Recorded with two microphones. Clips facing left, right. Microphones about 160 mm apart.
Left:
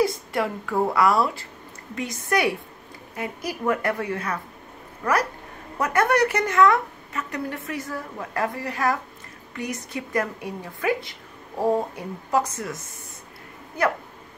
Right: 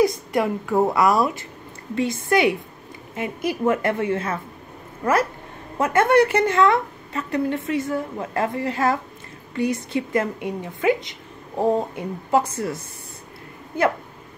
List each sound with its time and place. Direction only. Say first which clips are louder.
0.0 s a woman's voice: right 4 dB; 20° right (ahead or behind)